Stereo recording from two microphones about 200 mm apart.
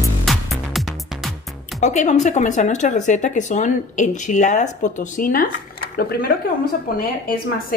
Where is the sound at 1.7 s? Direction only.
35° left (ahead or behind).